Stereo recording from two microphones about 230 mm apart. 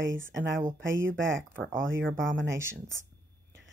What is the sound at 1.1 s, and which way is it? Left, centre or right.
Speech, right.